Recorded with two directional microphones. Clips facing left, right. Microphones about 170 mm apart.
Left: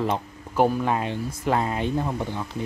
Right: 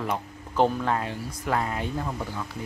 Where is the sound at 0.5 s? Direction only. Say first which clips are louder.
Left 2 dB; 10° left (ahead or behind).